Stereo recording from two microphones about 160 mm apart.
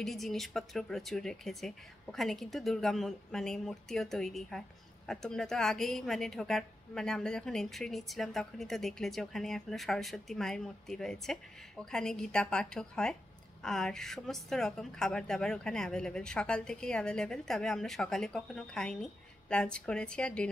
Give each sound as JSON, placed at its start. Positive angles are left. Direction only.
{"t": 0.0, "sound": "a woman's voice", "side_deg": 0}